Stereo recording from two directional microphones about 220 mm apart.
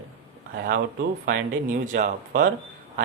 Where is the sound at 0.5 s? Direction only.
40° right (ahead or behind).